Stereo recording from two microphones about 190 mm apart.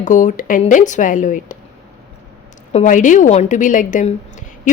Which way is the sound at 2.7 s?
45° left (ahead or behind).